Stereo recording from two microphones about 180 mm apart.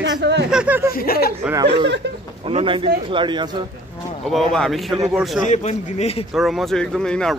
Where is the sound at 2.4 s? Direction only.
30° right (ahead or behind).